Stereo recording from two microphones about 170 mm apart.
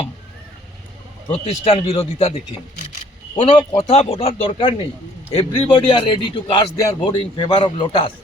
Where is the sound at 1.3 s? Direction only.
35° left (ahead or behind).